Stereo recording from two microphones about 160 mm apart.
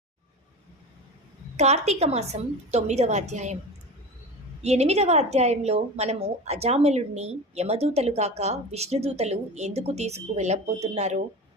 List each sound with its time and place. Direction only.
1.5 s a woman's voice: 45° right (ahead or behind)
4.6 s a woman's voice: 45° right (ahead or behind)